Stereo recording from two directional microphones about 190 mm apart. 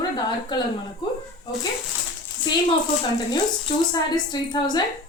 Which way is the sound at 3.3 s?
20° left (ahead or behind).